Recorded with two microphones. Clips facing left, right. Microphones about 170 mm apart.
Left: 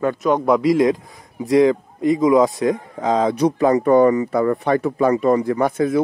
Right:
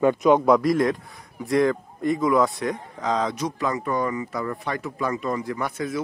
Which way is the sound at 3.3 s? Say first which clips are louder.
Left 11 dB; 60° left (ahead or behind).